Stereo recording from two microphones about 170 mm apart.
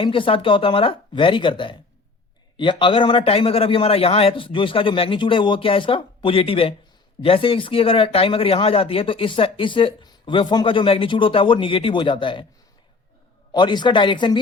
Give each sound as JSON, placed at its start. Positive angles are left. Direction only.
{"t": 0.0, "sound": "speech", "side_deg": 30}
{"t": 13.5, "sound": "speech", "side_deg": 25}